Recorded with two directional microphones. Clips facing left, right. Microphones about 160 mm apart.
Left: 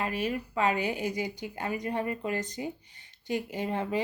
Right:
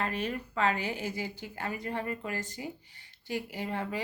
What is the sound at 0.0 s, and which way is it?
A woman's voice, 10° left (ahead or behind).